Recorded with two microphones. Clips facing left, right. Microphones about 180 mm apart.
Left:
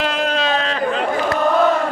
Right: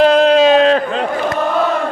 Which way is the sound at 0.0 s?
40° right (ahead or behind).